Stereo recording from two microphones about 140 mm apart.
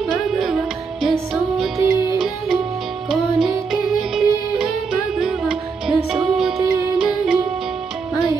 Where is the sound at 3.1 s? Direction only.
5° right (ahead or behind).